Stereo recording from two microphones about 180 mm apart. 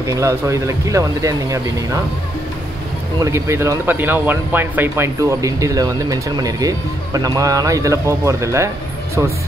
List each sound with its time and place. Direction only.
0.0 s speech: 15° right (ahead or behind)
3.2 s speech: 15° right (ahead or behind)